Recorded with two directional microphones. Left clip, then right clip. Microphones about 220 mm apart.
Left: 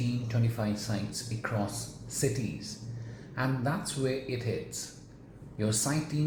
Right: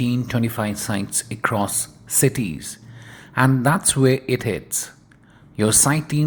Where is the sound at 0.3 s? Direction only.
35° right (ahead or behind).